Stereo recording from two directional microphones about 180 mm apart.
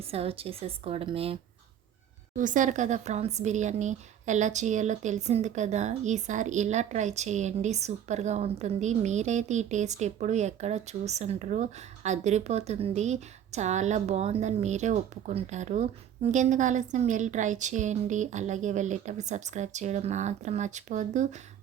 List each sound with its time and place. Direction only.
0.1 s speech: 30° right (ahead or behind)
2.3 s speech: 45° right (ahead or behind)